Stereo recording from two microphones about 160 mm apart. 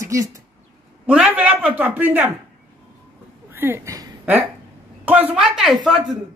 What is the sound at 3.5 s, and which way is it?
Speech, 15° right (ahead or behind).